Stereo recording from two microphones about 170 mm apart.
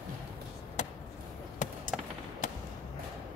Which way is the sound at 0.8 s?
45° left (ahead or behind).